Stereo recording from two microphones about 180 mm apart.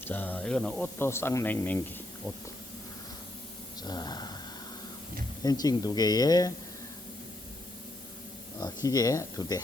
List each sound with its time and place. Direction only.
0.0 s speech: 10° left (ahead or behind)
3.8 s speech: 20° left (ahead or behind)
5.4 s speech: 20° left (ahead or behind)
8.6 s speech: 20° left (ahead or behind)